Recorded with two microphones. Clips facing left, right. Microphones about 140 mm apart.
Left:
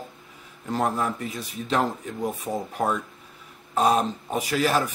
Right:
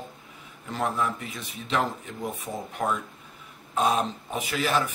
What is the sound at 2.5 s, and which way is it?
Speech, 30° left (ahead or behind).